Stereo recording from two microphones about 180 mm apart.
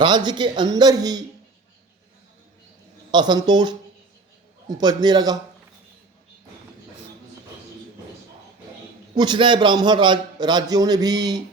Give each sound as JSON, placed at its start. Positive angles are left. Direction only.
{"t": 0.0, "sound": "a man's voice", "side_deg": -25}
{"t": 3.1, "sound": "a man's voice", "side_deg": -25}
{"t": 4.8, "sound": "a man's voice", "side_deg": -25}
{"t": 9.1, "sound": "a man's voice", "side_deg": -25}